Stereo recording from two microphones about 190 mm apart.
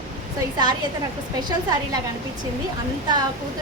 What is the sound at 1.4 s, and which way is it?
Speech, 20° right (ahead or behind).